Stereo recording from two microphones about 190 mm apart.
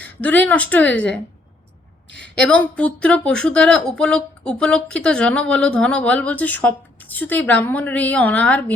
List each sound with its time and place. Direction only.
0.0 s speech: 10° left (ahead or behind)
2.3 s speech: 5° left (ahead or behind)